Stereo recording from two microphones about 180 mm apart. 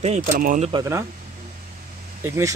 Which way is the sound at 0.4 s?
50° right (ahead or behind).